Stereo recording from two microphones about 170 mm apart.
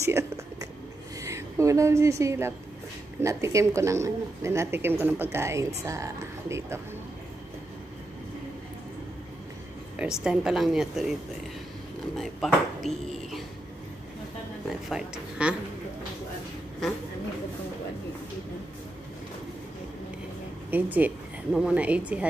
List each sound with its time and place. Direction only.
0.0 s a sound: 15° right (ahead or behind)
1.2 s a woman's voice: 15° right (ahead or behind)
9.9 s a woman's voice: 5° right (ahead or behind)
12.2 s a woman's voice: centre (ahead or behind)
14.7 s a woman's voice: 5° right (ahead or behind)
16.8 s a woman's voice: centre (ahead or behind)
20.7 s speech: 10° right (ahead or behind)